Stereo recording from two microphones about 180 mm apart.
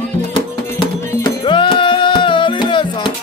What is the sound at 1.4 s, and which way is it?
Music, 25° left (ahead or behind).